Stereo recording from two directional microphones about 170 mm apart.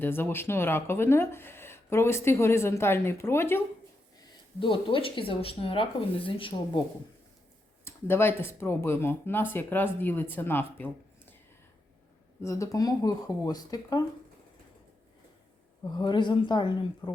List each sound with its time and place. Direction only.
0.0 s speech: 10° left (ahead or behind)
4.6 s speech: 30° left (ahead or behind)
7.9 s speech: 15° left (ahead or behind)
12.4 s speech: 15° left (ahead or behind)
15.8 s speech: 25° left (ahead or behind)